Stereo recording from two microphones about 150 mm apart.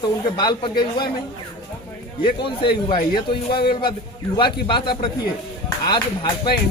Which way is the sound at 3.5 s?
90° left.